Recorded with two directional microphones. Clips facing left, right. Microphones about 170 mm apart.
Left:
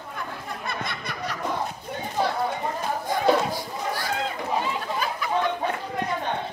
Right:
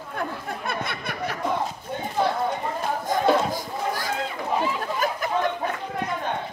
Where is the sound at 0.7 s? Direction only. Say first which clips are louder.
Right 2 dB; 55° right (ahead or behind).